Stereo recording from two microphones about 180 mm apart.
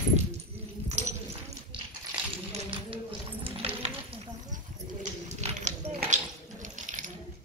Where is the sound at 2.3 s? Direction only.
30° right (ahead or behind).